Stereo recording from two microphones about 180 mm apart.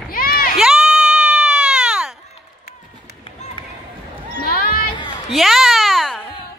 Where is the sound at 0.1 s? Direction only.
55° left (ahead or behind).